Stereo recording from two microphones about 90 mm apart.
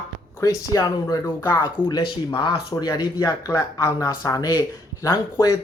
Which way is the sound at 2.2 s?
60° left (ahead or behind).